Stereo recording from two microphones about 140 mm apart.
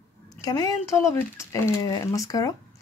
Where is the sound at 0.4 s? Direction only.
25° left (ahead or behind).